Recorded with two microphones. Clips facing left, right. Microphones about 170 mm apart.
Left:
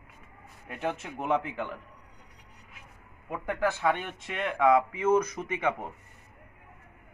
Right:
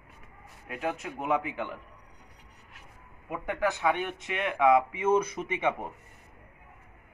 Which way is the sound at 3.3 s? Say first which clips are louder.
Even; 15° right (ahead or behind).